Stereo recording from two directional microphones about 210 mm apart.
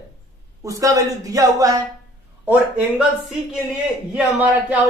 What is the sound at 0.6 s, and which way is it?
Speech, 15° right (ahead or behind).